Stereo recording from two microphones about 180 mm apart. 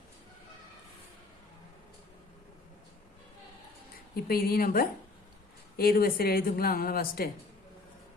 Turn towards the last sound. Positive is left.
turn(degrees=55)  # may be behind; listen again after turning